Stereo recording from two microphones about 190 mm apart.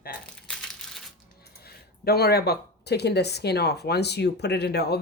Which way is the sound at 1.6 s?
55° left (ahead or behind).